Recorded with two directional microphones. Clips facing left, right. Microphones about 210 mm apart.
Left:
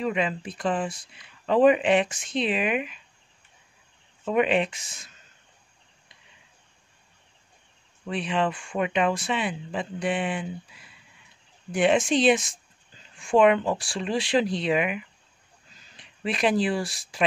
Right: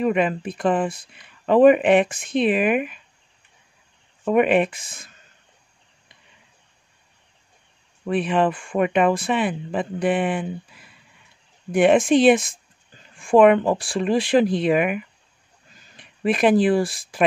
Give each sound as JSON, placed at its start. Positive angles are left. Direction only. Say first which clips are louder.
{"t": 0.0, "sound": "speech", "louder": "right 6 dB", "side_deg": -55}
{"t": 4.2, "sound": "speech", "louder": "right 5 dB", "side_deg": -55}
{"t": 8.1, "sound": "speech", "louder": "right 6 dB", "side_deg": -55}
{"t": 11.7, "sound": "speech", "louder": "right 6 dB", "side_deg": -55}